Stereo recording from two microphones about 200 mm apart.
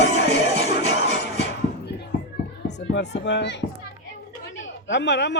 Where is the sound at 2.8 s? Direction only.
60° left (ahead or behind).